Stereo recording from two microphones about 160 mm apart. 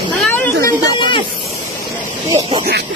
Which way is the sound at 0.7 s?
30° left (ahead or behind).